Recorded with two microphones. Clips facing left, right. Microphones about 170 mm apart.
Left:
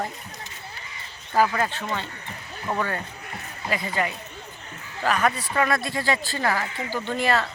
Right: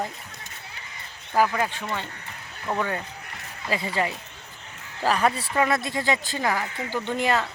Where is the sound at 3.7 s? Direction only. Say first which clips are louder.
Even; 25° right (ahead or behind).